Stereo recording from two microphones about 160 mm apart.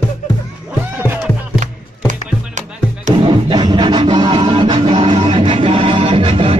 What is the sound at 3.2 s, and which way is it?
Music, 30° right (ahead or behind).